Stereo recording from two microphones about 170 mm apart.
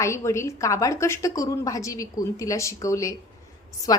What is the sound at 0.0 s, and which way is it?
A woman's voice, 15° left (ahead or behind).